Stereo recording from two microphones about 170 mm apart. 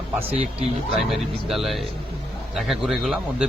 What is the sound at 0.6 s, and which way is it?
Speech, centre (ahead or behind).